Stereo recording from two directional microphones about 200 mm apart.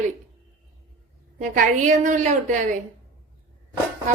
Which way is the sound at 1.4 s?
40° right (ahead or behind).